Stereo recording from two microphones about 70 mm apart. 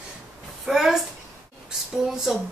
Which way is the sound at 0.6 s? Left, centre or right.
Centre.